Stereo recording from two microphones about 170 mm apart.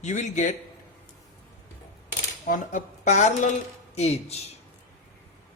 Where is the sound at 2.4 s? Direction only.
50° left (ahead or behind).